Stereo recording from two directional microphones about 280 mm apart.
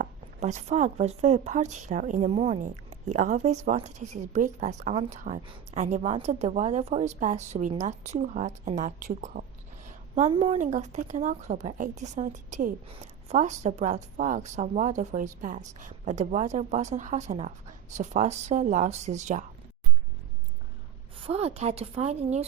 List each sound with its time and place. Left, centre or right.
0.0 s speech: right
21.2 s speech: right